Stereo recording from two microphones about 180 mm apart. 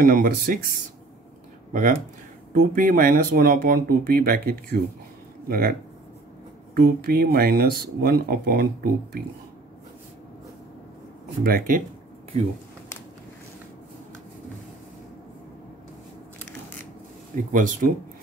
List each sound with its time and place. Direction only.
0.0 s speech: 50° right (ahead or behind)
1.7 s speech: 45° right (ahead or behind)
11.4 s speech: 55° right (ahead or behind)
17.5 s speech: 45° right (ahead or behind)